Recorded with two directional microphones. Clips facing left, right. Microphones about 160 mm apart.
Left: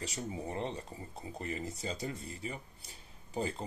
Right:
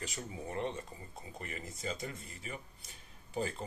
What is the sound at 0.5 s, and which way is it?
Speech, 30° left (ahead or behind).